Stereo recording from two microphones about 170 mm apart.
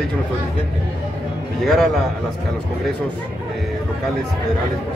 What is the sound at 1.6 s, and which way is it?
Speech, centre (ahead or behind).